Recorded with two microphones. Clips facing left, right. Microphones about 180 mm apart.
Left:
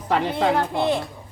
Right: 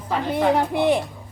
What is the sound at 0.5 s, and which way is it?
Speech, 15° right (ahead or behind).